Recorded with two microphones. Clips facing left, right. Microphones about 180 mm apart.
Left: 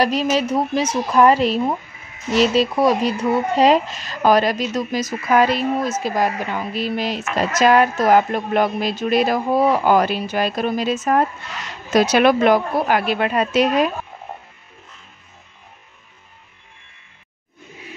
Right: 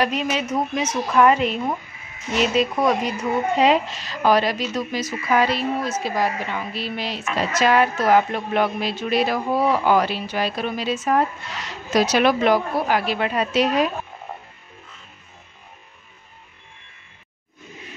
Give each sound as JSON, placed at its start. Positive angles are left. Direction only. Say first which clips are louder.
{"t": 0.0, "sound": "a woman's voice", "louder": "left 4 dB", "side_deg": 35}